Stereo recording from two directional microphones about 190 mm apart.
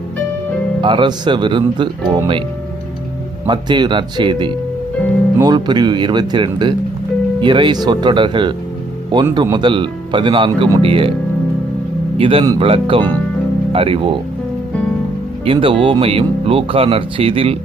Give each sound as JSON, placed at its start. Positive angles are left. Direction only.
{"t": 0.8, "sound": "speech", "side_deg": -25}
{"t": 3.4, "sound": "speech", "side_deg": -25}
{"t": 12.1, "sound": "speech", "side_deg": -30}
{"t": 15.4, "sound": "speech", "side_deg": -30}